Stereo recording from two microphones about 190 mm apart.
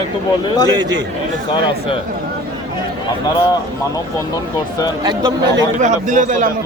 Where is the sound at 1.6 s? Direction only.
30° left (ahead or behind).